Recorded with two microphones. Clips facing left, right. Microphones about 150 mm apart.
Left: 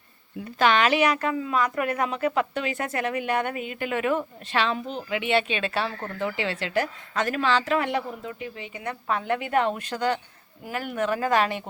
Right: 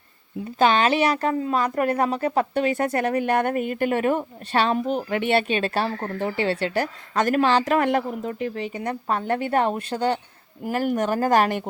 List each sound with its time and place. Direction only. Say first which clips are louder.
0.6 s speech: right 2 dB; 30° right (ahead or behind)
10.6 s speech: right 5 dB; 40° right (ahead or behind)